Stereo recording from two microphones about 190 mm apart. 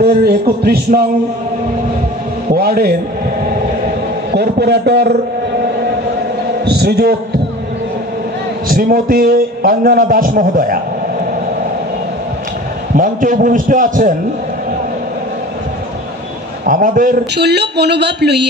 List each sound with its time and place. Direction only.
0.0 s speech: 55° right (ahead or behind)
2.5 s a man's voice: 55° right (ahead or behind)
4.3 s speech: 60° right (ahead or behind)
6.6 s speech: 55° right (ahead or behind)
8.6 s a man's voice: 50° right (ahead or behind)
12.9 s a man's voice: 45° right (ahead or behind)
16.6 s a man's voice: 45° right (ahead or behind)
17.5 s speech: 60° right (ahead or behind)